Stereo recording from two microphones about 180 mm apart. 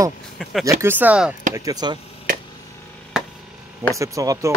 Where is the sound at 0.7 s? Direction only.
15° right (ahead or behind).